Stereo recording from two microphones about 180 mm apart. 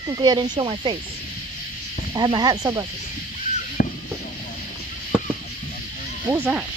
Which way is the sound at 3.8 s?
55° left (ahead or behind).